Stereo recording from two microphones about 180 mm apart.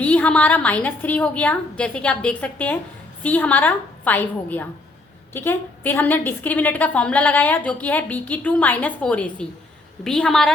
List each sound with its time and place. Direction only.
0.0 s a woman's voice: 10° left (ahead or behind)